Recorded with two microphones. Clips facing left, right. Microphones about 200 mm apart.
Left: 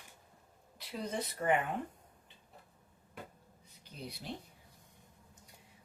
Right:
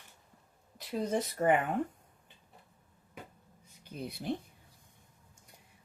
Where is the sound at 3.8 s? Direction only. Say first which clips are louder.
Right 6 dB; 50° right (ahead or behind).